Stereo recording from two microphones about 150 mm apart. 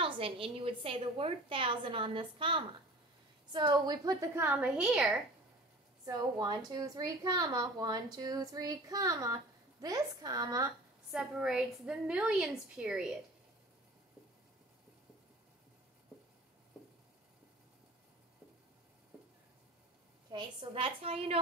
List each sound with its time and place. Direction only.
0.0 s a woman's voice: 35° right (ahead or behind); by 4.5 s 20° right (ahead or behind)
4.5 s a woman's voice: 5° right (ahead or behind)
6.0 s a woman's voice: 25° right (ahead or behind)
11.1 s a woman's voice: 5° right (ahead or behind)
20.2 s a woman's voice: 35° right (ahead or behind)